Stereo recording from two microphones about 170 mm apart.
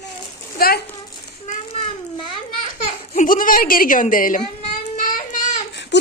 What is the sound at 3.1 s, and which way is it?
Speech, 50° left (ahead or behind).